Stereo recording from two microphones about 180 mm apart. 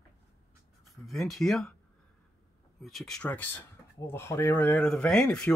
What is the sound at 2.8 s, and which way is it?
Speech, centre (ahead or behind).